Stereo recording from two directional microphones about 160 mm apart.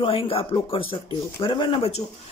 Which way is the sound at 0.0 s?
35° left (ahead or behind).